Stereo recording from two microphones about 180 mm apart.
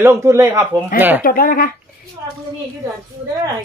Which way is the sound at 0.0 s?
15° right (ahead or behind).